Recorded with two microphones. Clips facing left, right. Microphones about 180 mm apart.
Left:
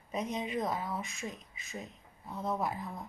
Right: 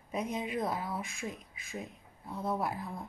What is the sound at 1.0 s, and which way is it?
Speech, 55° right (ahead or behind).